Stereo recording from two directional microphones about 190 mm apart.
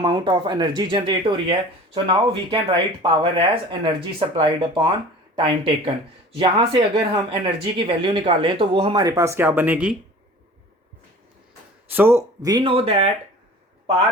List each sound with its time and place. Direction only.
0.0 s speech: 25° right (ahead or behind); by 9.9 s 10° right (ahead or behind)
11.9 s speech: 10° right (ahead or behind); by 13.1 s 30° right (ahead or behind)